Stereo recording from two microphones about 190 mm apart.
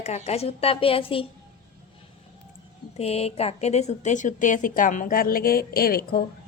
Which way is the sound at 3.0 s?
35° left (ahead or behind).